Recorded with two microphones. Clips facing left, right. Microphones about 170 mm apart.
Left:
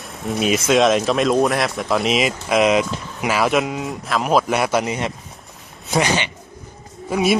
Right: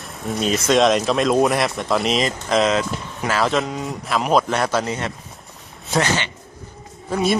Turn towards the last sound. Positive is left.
turn(degrees=5)  # may be behind; listen again after turning